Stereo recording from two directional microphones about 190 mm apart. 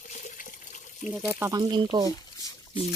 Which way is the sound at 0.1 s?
40° left (ahead or behind).